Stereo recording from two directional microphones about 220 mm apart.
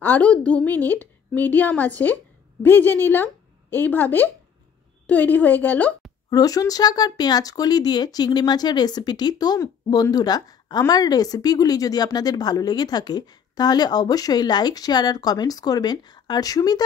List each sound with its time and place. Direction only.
0.0 s speech: 5° left (ahead or behind)